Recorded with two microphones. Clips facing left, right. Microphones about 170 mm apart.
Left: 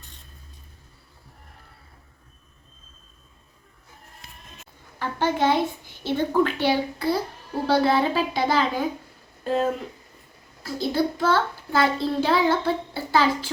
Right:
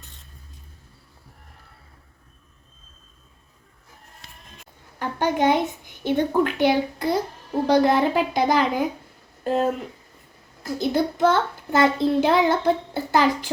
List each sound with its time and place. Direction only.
4.9 s a child's voice: 15° right (ahead or behind)
10.6 s child singing: 20° right (ahead or behind)